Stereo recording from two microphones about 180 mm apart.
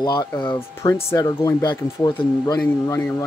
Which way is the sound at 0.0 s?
20° left (ahead or behind).